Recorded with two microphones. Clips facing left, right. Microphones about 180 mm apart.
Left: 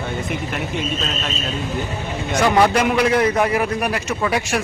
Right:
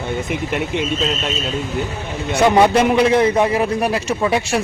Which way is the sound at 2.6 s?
25° right (ahead or behind).